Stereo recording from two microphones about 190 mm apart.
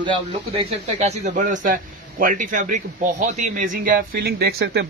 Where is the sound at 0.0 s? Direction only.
30° right (ahead or behind).